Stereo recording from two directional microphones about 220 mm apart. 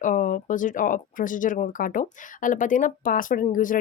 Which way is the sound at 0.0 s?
35° left (ahead or behind).